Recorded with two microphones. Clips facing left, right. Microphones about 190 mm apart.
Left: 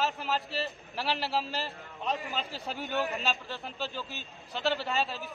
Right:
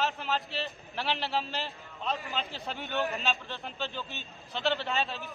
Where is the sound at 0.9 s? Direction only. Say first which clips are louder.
Even; 5° left (ahead or behind).